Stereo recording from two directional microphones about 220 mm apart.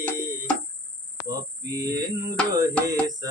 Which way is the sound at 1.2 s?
15° right (ahead or behind).